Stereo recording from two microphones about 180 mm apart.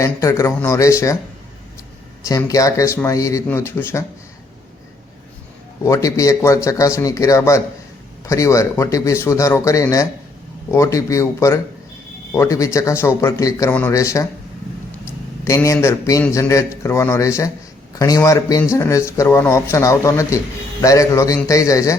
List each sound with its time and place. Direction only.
0.0 s speech: 15° left (ahead or behind)
2.2 s speech: 20° left (ahead or behind)
5.8 s speech: 15° left (ahead or behind)
15.4 s speech: 15° left (ahead or behind)